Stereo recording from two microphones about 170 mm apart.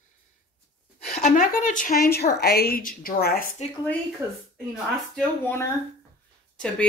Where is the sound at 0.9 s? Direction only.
60° left (ahead or behind).